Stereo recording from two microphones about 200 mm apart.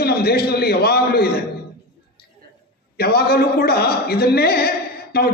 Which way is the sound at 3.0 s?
50° left (ahead or behind).